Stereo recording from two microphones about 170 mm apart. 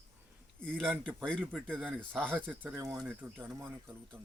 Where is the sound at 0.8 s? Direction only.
10° right (ahead or behind).